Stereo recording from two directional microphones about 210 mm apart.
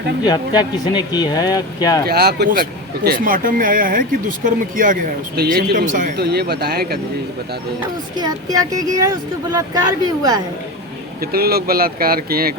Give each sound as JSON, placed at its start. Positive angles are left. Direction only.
{"t": 0.3, "sound": "speech", "side_deg": 20}
{"t": 2.0, "sound": "speech", "side_deg": -50}
{"t": 8.1, "sound": "speech", "side_deg": -20}
{"t": 11.2, "sound": "speech", "side_deg": -45}